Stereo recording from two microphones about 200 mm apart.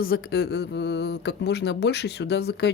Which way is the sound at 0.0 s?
50° left (ahead or behind).